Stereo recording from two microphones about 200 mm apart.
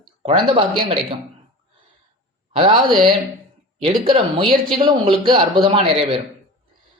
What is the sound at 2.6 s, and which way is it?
Speech, 25° right (ahead or behind).